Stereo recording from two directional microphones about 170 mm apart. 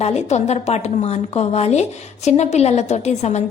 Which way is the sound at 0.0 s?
40° left (ahead or behind).